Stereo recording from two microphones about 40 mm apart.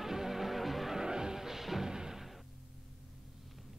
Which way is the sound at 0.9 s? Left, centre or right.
Centre.